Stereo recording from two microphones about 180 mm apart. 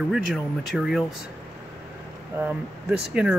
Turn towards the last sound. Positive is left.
turn(degrees=-5)  # may be behind; listen again after turning